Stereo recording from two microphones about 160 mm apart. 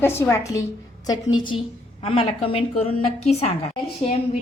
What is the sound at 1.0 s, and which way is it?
A woman's voice, 30° left (ahead or behind).